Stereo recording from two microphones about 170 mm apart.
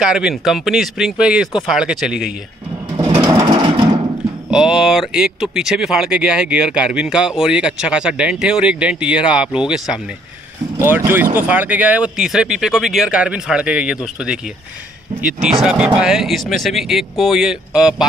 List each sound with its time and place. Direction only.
0.0 s speech: 5° right (ahead or behind)
3.2 s a sound: 25° right (ahead or behind)
4.5 s speech: 5° right (ahead or behind)
15.6 s speech: 5° right (ahead or behind)